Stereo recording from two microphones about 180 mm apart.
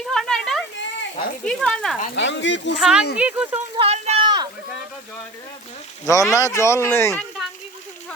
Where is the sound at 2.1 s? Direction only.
85° left.